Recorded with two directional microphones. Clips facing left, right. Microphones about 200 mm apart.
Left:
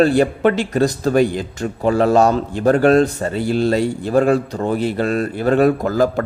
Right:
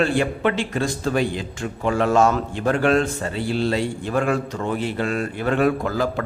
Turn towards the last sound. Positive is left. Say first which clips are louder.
# left 6 dB
turn(degrees=45)  # may be behind; listen again after turning